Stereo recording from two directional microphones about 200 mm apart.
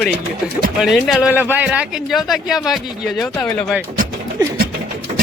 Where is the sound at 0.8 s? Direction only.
Centre (ahead or behind).